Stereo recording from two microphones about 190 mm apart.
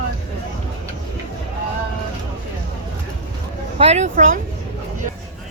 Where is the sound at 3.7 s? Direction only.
30° right (ahead or behind).